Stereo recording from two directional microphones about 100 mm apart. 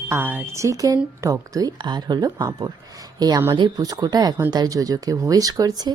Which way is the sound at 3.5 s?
50° right (ahead or behind).